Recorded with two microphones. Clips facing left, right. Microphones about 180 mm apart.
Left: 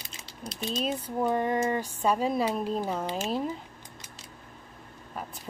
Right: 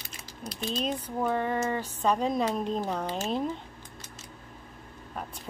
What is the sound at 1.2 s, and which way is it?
Speech, 15° left (ahead or behind).